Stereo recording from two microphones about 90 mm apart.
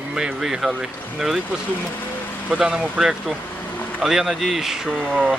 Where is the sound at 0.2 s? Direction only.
5° right (ahead or behind).